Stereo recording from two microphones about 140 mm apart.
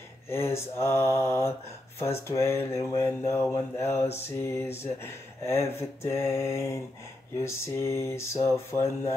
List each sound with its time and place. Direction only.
0.3 s mantra: 20° left (ahead or behind)